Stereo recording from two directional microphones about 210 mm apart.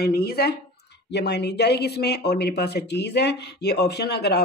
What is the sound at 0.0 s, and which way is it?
Speech, 45° left (ahead or behind).